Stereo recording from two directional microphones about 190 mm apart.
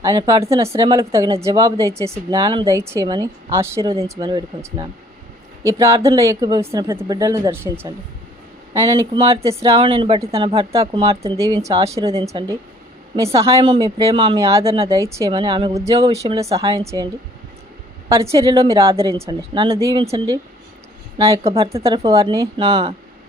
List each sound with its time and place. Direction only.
0.0 s a woman's voice: 15° right (ahead or behind)
9.4 s a woman's voice: 15° right (ahead or behind)
14.8 s speech: 15° right (ahead or behind)
15.3 s a woman's voice: 25° right (ahead or behind)
18.3 s speech: 15° right (ahead or behind)
18.9 s a woman's voice: 30° right (ahead or behind)
21.8 s a woman's voice: 30° right (ahead or behind)